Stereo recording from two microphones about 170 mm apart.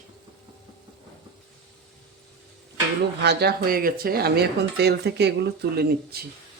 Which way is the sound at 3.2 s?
75° right (ahead or behind).